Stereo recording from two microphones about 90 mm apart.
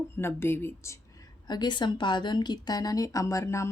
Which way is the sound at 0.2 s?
25° left (ahead or behind).